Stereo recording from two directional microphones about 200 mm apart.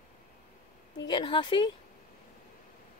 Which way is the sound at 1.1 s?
25° left (ahead or behind).